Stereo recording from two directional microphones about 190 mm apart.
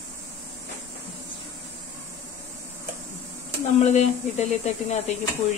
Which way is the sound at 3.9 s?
35° left (ahead or behind).